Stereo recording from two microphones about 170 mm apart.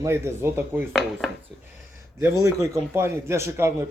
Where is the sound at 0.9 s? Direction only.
Centre (ahead or behind).